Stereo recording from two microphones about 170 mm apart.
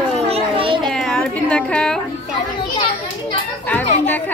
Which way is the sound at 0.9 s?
5° left (ahead or behind).